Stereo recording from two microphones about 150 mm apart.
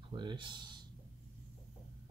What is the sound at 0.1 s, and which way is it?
Speech, 30° right (ahead or behind).